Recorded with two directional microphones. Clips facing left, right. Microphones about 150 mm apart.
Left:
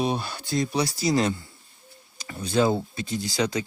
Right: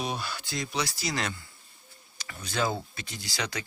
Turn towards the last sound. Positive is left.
turn(degrees=25)  # may be behind; listen again after turning